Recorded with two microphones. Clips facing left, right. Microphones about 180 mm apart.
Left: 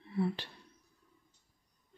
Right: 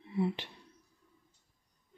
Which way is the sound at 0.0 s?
20° right (ahead or behind).